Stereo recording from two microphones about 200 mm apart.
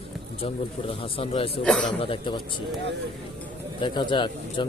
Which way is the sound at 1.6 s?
5° left (ahead or behind).